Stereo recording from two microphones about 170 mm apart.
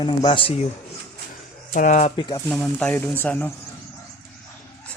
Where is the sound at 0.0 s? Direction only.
25° left (ahead or behind).